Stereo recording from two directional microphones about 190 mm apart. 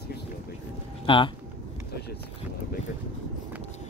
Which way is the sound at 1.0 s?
25° left (ahead or behind).